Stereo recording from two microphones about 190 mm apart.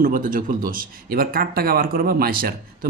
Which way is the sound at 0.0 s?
45° right (ahead or behind).